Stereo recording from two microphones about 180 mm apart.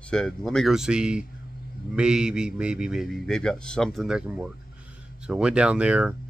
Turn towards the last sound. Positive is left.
turn(degrees=-5)  # may be behind; listen again after turning